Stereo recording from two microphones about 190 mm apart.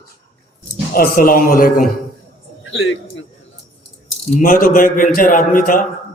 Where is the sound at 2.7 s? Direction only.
90° left.